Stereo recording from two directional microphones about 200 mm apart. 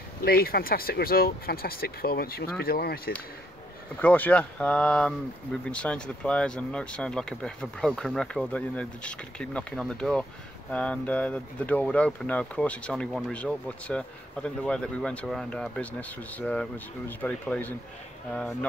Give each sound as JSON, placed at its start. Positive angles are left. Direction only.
{"t": 0.2, "sound": "speech", "side_deg": 50}
{"t": 3.9, "sound": "speech", "side_deg": 10}